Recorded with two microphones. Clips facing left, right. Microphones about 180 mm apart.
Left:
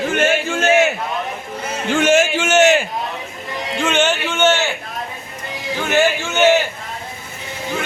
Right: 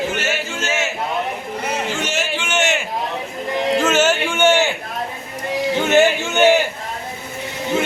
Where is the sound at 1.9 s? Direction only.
55° left (ahead or behind).